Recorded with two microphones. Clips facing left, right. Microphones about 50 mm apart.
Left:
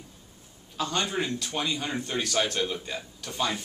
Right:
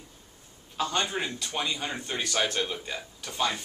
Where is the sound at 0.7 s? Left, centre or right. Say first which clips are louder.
Even; centre.